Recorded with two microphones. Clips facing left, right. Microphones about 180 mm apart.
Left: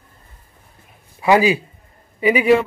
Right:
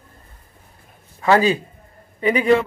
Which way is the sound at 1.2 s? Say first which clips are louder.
Left 1 dB; 10° left (ahead or behind).